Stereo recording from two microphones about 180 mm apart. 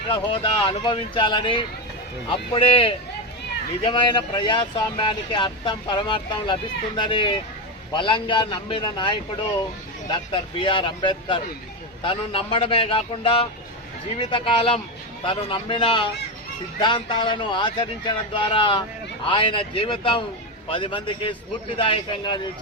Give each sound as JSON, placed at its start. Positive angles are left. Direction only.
{"t": 0.1, "sound": "a man's voice", "side_deg": 30}